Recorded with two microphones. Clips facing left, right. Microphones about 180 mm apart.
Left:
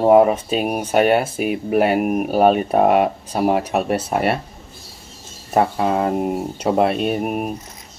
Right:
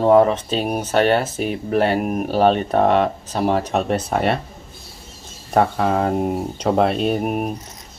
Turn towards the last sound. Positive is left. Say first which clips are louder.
# right 1 dB
turn(degrees=0)  # may be behind; listen again after turning